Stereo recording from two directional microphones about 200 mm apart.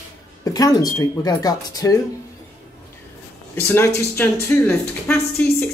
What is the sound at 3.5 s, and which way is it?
Speech, 10° left (ahead or behind).